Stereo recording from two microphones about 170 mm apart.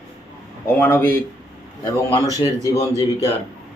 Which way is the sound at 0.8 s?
10° left (ahead or behind).